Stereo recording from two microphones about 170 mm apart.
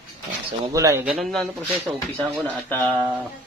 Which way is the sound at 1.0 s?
Centre (ahead or behind).